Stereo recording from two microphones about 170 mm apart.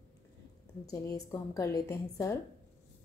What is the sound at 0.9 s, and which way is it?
A woman's voice, 20° left (ahead or behind).